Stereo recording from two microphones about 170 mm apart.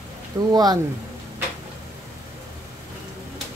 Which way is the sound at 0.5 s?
25° right (ahead or behind).